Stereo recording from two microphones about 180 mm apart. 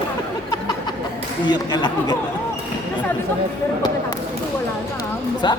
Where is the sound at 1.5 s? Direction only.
25° left (ahead or behind).